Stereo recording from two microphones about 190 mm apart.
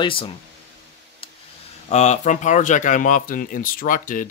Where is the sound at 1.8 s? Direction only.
35° left (ahead or behind).